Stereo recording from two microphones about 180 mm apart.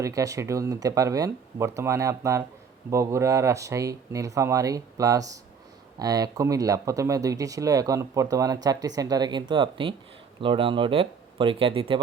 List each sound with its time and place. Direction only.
0.0 s speech: 20° right (ahead or behind)